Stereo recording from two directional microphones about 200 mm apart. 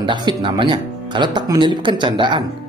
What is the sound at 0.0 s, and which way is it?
Speech, 25° right (ahead or behind).